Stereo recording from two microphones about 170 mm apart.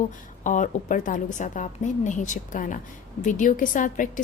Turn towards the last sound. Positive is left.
turn(degrees=50)  # may be behind; listen again after turning